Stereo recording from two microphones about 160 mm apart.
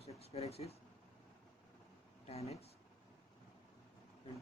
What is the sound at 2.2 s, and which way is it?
Speech, 40° left (ahead or behind).